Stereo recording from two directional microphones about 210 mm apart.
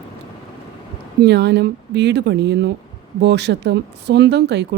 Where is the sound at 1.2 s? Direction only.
50° right (ahead or behind).